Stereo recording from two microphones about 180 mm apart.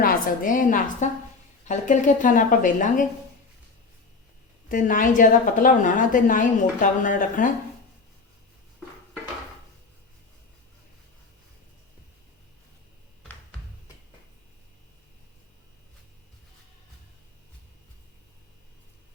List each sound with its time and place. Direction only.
0.0 s a woman's voice: 50° left (ahead or behind)
4.7 s a woman's voice: 50° left (ahead or behind)